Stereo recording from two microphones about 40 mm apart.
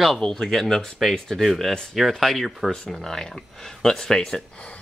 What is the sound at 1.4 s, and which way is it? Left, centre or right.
Speech, centre.